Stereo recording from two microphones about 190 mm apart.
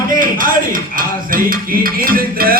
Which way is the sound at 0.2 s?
45° right (ahead or behind).